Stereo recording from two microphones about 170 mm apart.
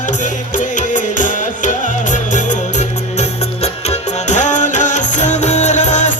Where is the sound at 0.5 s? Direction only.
50° left (ahead or behind).